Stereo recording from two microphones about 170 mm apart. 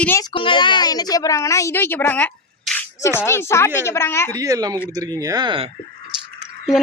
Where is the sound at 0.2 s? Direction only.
30° left (ahead or behind).